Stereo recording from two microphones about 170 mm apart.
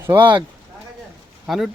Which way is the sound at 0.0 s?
15° right (ahead or behind).